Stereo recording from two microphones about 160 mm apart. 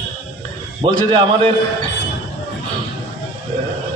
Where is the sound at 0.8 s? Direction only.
35° right (ahead or behind).